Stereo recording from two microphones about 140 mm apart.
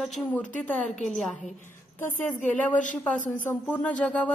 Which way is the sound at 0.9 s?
60° left (ahead or behind).